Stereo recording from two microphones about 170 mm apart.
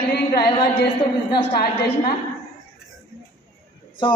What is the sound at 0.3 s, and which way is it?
Speech, 70° left (ahead or behind).